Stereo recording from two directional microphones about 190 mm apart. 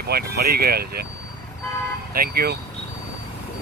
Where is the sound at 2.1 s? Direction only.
55° right (ahead or behind).